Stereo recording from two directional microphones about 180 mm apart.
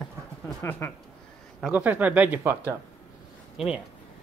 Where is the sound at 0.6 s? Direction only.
15° left (ahead or behind).